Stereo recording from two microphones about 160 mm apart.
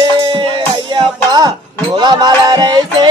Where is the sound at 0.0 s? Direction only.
30° right (ahead or behind).